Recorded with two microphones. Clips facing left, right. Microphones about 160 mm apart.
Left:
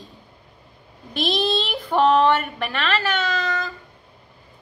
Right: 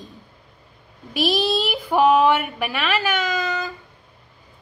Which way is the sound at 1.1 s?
5° right (ahead or behind).